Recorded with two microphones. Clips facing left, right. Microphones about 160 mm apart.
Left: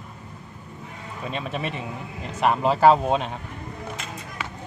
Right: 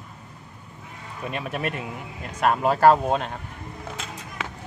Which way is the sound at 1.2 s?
5° right (ahead or behind).